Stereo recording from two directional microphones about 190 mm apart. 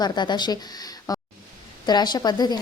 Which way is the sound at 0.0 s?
20° left (ahead or behind).